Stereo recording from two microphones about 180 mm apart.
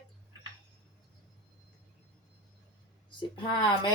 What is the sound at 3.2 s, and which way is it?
Speech, 25° left (ahead or behind).